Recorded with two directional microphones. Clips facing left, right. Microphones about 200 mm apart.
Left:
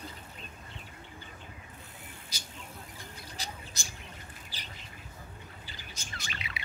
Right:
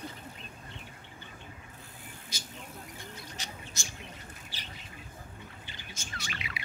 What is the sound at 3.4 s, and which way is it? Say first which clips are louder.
Bird: left 5 dB; 35° left (ahead or behind).